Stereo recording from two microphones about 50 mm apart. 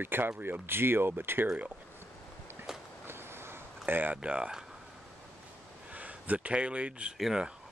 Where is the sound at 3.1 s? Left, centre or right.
Right.